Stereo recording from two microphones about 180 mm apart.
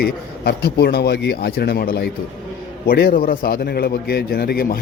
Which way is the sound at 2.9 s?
55° left (ahead or behind).